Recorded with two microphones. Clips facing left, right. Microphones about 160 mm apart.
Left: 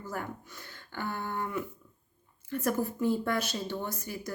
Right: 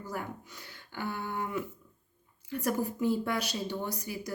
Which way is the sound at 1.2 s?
10° right (ahead or behind).